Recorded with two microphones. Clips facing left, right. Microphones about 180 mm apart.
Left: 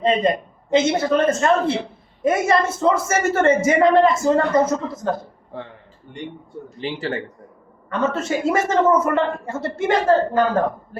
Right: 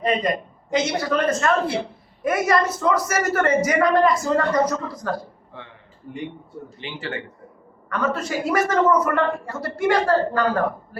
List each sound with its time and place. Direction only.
0.0 s a woman's voice: 25° left (ahead or behind)
5.5 s a man's voice: 35° left (ahead or behind)
6.1 s speech: 5° right (ahead or behind)
6.7 s a man's voice: 35° left (ahead or behind)
7.9 s a woman's voice: 25° left (ahead or behind)